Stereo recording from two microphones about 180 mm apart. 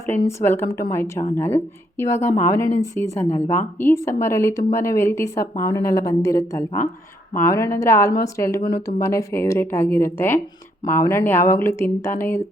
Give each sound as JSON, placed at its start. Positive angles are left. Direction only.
{"t": 0.0, "sound": "speech", "side_deg": 15}